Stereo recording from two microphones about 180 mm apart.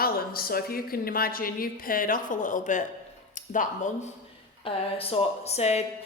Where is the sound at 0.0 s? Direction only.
55° left (ahead or behind).